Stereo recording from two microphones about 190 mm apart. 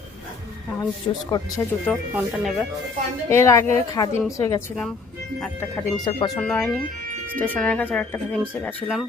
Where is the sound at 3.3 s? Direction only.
15° left (ahead or behind).